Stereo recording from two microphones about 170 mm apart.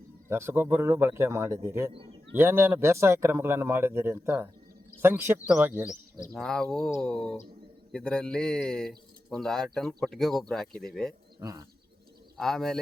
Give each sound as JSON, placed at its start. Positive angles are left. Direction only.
{"t": 0.3, "sound": "speech", "side_deg": -15}
{"t": 6.3, "sound": "speech", "side_deg": 5}
{"t": 11.3, "sound": "speech", "side_deg": -20}
{"t": 12.4, "sound": "speech", "side_deg": 0}